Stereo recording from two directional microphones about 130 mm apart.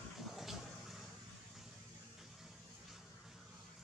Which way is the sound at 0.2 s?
Centre (ahead or behind).